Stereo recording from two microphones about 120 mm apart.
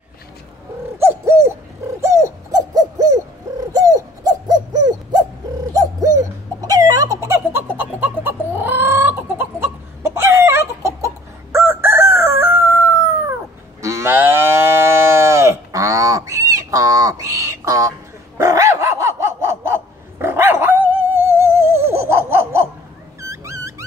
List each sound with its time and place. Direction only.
0.9 s bird: 20° right (ahead or behind)
2.0 s owl: 25° right (ahead or behind)
5.7 s a sound: 30° right (ahead or behind)
7.7 s chicken: 15° right (ahead or behind)
11.5 s crowing: 20° right (ahead or behind)
13.7 s cattle: 25° right (ahead or behind)
18.4 s dog: 25° right (ahead or behind)
23.2 s music: 25° right (ahead or behind)